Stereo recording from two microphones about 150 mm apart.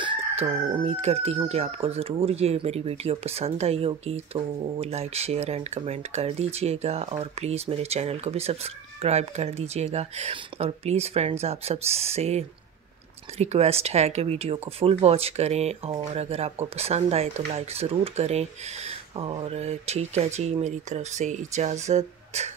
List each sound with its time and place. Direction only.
0.0 s speech: 40° right (ahead or behind)